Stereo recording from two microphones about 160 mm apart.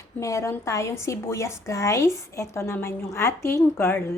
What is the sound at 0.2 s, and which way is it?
A woman's voice, 20° left (ahead or behind).